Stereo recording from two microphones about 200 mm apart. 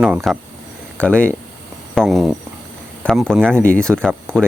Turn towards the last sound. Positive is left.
turn(degrees=5)  # may be behind; listen again after turning